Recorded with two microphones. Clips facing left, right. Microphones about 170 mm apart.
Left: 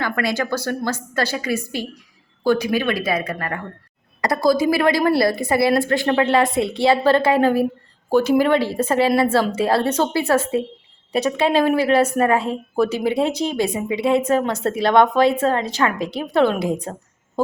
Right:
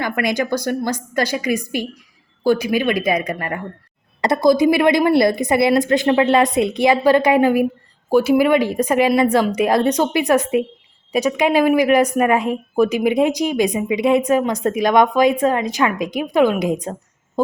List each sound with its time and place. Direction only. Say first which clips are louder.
0.0 s a woman's voice: right 2 dB; 15° right (ahead or behind)